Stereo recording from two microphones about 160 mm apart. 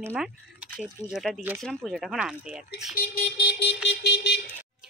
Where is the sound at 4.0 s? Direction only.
90° left.